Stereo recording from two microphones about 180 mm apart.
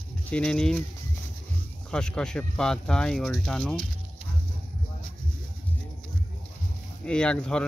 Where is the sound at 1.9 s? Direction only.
5° left (ahead or behind).